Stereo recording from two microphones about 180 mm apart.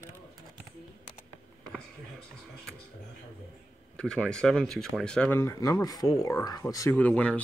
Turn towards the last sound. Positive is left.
turn(degrees=10)  # may be behind; listen again after turning